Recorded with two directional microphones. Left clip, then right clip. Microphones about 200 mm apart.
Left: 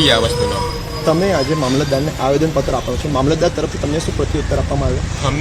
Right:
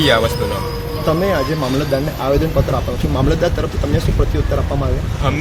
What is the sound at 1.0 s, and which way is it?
Speech, 35° left (ahead or behind).